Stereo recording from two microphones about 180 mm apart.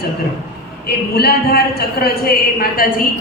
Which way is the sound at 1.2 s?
60° left (ahead or behind).